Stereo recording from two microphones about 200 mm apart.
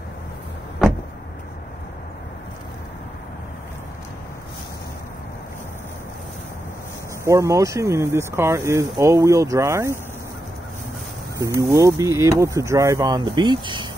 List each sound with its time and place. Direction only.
7.2 s speech: 15° right (ahead or behind)
11.3 s speech: 15° right (ahead or behind)